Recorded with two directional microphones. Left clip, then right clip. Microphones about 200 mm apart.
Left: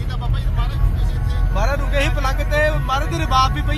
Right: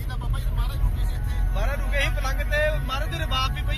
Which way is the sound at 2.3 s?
50° left (ahead or behind).